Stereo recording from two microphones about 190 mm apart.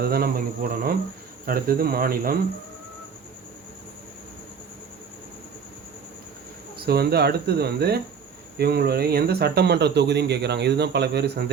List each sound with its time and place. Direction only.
0.0 s speech: 55° right (ahead or behind)
6.7 s speech: 55° right (ahead or behind)